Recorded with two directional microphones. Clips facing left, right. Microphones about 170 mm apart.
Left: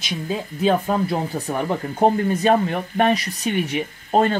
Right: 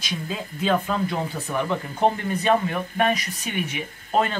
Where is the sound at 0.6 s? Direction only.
35° left (ahead or behind).